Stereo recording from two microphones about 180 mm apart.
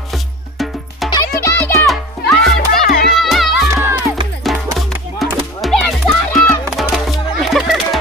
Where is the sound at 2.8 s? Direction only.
60° left (ahead or behind).